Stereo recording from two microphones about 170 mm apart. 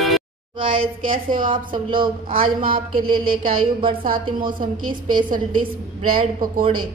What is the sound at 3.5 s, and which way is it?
Speech, 30° right (ahead or behind).